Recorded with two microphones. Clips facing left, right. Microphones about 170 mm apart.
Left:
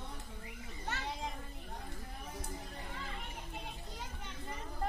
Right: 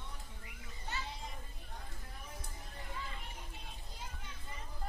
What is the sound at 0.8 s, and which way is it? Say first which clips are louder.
Children playing: left 3 dB; 75° left (ahead or behind).